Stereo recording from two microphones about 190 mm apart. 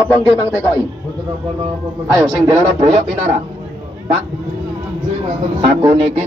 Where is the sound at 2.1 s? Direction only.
20° right (ahead or behind).